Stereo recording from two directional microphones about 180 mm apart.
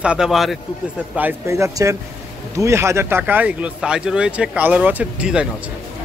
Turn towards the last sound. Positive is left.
turn(degrees=-5)  # may be behind; listen again after turning